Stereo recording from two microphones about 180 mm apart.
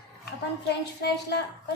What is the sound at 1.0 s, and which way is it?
Speech, 65° left (ahead or behind).